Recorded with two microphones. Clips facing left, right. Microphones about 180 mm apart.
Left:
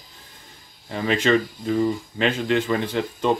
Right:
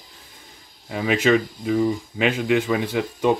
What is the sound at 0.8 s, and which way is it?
Speech, 5° right (ahead or behind).